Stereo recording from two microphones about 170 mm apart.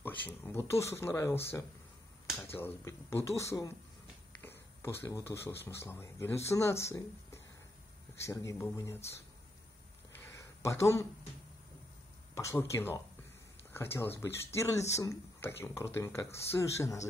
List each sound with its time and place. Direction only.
0.0 s speech: 10° left (ahead or behind)
10.1 s a sound: 15° left (ahead or behind)
12.4 s speech: 15° left (ahead or behind)